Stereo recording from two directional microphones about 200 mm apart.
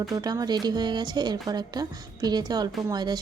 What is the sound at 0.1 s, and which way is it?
Speech, 20° right (ahead or behind).